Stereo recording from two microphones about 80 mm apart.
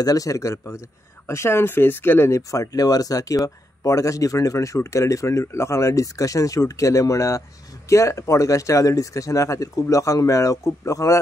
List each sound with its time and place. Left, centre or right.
0.0 s speech: left